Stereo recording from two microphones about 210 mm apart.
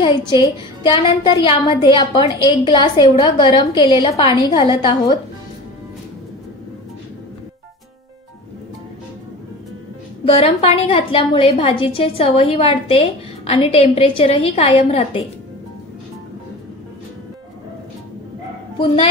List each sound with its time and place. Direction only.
0.8 s a woman's voice: 20° left (ahead or behind)
10.2 s a woman's voice: 30° left (ahead or behind)